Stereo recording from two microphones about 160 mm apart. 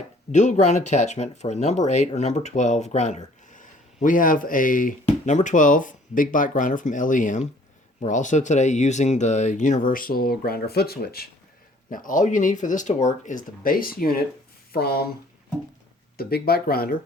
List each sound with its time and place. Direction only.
0.3 s speech: 45° left (ahead or behind); by 11.3 s 75° left (ahead or behind)
11.9 s speech: 55° left (ahead or behind)
14.7 s speech: 75° left (ahead or behind)
16.1 s speech: 70° left (ahead or behind)